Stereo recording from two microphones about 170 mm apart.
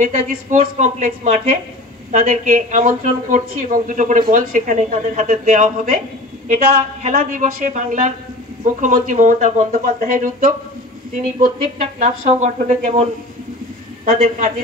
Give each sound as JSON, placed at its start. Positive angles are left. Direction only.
{"t": 0.0, "sound": "a woman's voice", "side_deg": -45}
{"t": 14.0, "sound": "a man's voice", "side_deg": -55}